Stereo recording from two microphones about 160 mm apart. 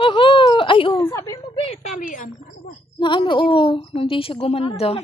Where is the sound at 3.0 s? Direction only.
30° left (ahead or behind).